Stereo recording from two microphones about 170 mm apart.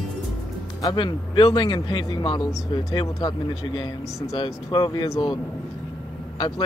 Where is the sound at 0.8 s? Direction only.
30° left (ahead or behind).